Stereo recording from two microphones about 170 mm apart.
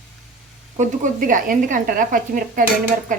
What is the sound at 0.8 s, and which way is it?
A woman's voice, 50° right (ahead or behind).